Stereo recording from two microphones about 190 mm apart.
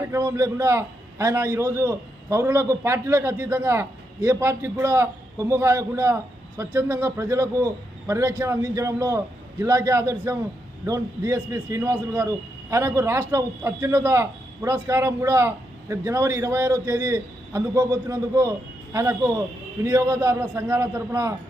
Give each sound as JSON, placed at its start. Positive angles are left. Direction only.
{"t": 0.1, "sound": "a man's voice", "side_deg": -15}